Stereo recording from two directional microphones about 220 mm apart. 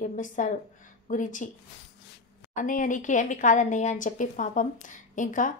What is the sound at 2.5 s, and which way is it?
A woman's voice, 35° left (ahead or behind).